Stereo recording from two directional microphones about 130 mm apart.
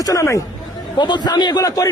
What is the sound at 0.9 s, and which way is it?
Speech, 35° left (ahead or behind).